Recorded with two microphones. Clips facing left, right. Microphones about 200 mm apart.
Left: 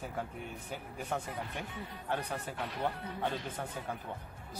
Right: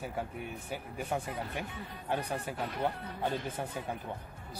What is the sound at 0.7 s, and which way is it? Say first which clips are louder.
A man's voice: right 2 dB; 10° right (ahead or behind).